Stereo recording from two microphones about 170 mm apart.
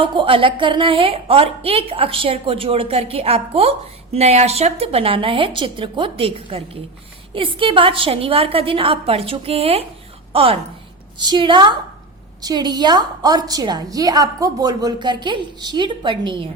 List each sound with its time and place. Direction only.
0.0 s a woman's voice: 30° right (ahead or behind)